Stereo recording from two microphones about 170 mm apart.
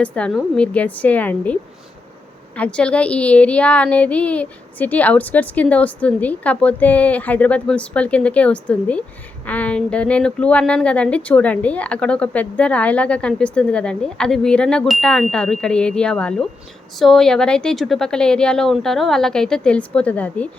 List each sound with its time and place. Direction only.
0.0 s a woman's voice: 5° left (ahead or behind)
2.6 s a woman's voice: 5° left (ahead or behind)